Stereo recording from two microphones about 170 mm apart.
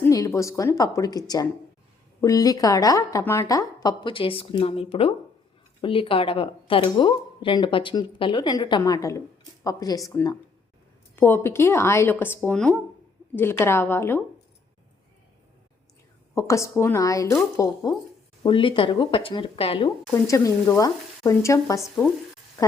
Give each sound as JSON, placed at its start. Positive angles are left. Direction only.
{"t": 0.0, "sound": "a woman's voice", "side_deg": 20}
{"t": 16.3, "sound": "a woman's voice", "side_deg": 20}
{"t": 18.4, "sound": "speech", "side_deg": 30}
{"t": 20.2, "sound": "speech", "side_deg": 20}